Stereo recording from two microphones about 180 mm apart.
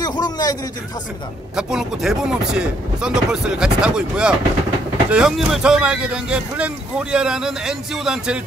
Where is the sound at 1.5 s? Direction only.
5° right (ahead or behind).